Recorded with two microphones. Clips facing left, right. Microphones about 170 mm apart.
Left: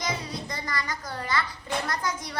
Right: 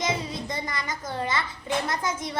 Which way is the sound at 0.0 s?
25° right (ahead or behind).